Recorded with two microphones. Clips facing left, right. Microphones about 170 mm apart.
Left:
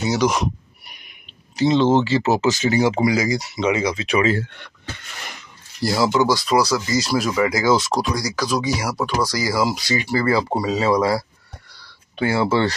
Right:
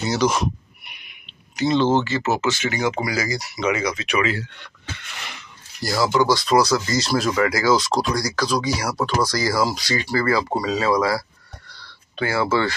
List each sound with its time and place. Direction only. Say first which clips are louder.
0.0 s speech: left 1 dB; 5° left (ahead or behind)
0.8 s a sound: even; 40° left (ahead or behind)
1.6 s speech: left 2 dB; 20° left (ahead or behind)
5.8 s speech: left 1 dB; 25° left (ahead or behind)
7.5 s speech: left 1 dB; 20° left (ahead or behind)
8.8 s speech: even; 5° left (ahead or behind); by 12.7 s 30° left (ahead or behind)